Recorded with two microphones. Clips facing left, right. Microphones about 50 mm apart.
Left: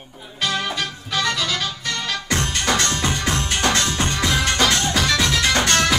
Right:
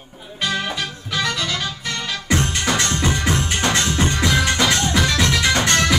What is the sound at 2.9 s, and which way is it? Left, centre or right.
Music, centre.